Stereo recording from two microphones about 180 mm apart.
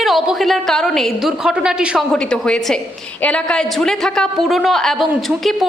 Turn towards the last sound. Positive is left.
turn(degrees=0)  # may be behind; listen again after turning